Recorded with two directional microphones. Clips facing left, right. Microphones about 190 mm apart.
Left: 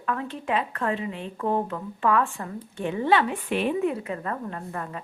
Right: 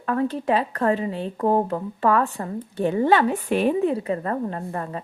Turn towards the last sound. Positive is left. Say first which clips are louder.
# right 5 dB
turn(degrees=-35)  # may be behind; listen again after turning